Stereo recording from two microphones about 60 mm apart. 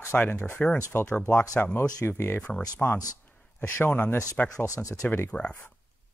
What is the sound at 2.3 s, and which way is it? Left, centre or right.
Speech, centre.